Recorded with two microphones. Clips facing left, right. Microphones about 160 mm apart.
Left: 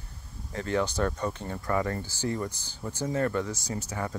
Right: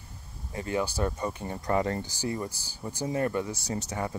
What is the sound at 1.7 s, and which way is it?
Speech, 25° right (ahead or behind).